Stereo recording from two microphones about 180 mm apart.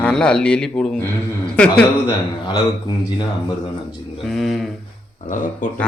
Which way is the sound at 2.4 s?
25° left (ahead or behind).